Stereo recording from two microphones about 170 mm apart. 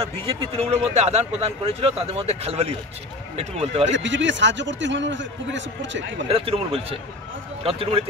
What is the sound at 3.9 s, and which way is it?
A man's voice, 90° right.